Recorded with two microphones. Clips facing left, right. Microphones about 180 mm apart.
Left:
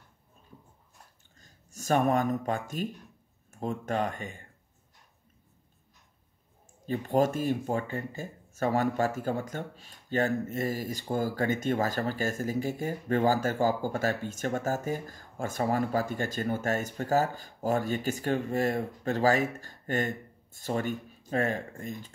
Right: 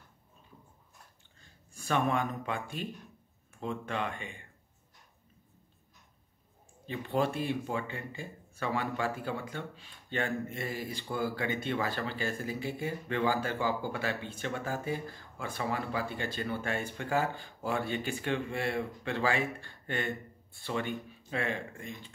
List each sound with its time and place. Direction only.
1.4 s speech: 40° left (ahead or behind)
6.9 s speech: 45° left (ahead or behind)